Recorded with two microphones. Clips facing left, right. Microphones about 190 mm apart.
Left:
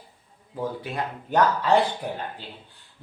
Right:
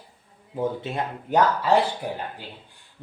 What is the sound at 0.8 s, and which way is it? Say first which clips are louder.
Speech: right 2 dB; 25° right (ahead or behind).